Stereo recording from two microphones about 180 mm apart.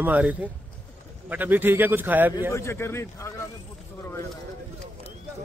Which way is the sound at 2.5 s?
15° left (ahead or behind).